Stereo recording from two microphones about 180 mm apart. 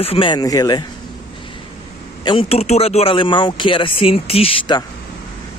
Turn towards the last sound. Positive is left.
turn(degrees=25)  # may be behind; listen again after turning